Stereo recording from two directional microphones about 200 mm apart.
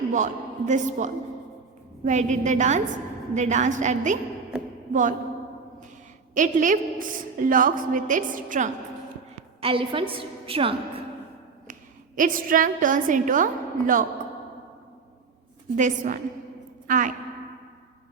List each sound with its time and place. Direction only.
0.1 s a man's voice: 35° right (ahead or behind)
6.3 s a woman's voice: 40° right (ahead or behind)
9.6 s a woman's voice: 25° right (ahead or behind)
11.7 s a woman's voice: 40° right (ahead or behind)
15.7 s a woman's voice: 40° right (ahead or behind)